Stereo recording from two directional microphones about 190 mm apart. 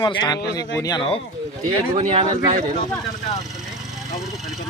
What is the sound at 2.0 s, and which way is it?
Speech, 35° right (ahead or behind).